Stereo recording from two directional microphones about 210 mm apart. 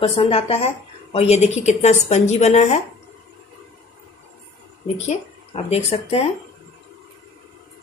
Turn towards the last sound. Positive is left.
turn(degrees=30)  # may be behind; listen again after turning